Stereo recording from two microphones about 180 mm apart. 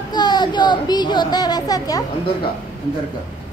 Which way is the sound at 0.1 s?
25° left (ahead or behind).